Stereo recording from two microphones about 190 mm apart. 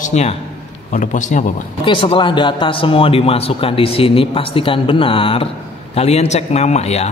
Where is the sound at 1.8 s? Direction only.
30° left (ahead or behind).